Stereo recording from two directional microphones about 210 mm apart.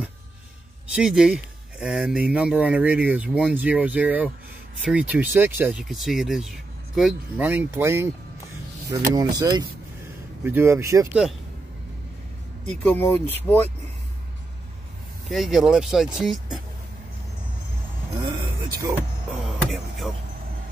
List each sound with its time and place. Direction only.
0.9 s speech: 5° right (ahead or behind)
12.8 s speech: 10° left (ahead or behind)
15.2 s speech: centre (ahead or behind)
18.2 s speech: 20° right (ahead or behind)
19.4 s speech: centre (ahead or behind)